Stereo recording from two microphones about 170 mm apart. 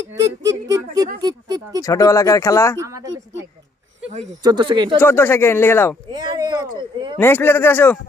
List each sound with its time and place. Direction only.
0.1 s speech: 15° right (ahead or behind)
1.8 s speech: 20° left (ahead or behind)
2.7 s speech: 20° right (ahead or behind)
4.4 s speech: 25° right (ahead or behind)
4.9 s speech: 15° left (ahead or behind)
6.1 s speech: 25° right (ahead or behind)
7.2 s speech: 15° left (ahead or behind)